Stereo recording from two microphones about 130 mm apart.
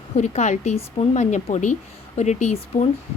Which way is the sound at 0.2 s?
65° left (ahead or behind).